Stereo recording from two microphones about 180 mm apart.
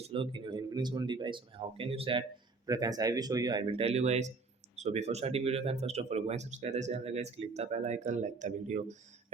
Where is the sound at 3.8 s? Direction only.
35° right (ahead or behind).